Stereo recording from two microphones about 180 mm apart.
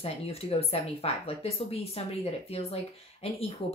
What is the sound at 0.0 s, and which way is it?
A woman's voice, 35° left (ahead or behind).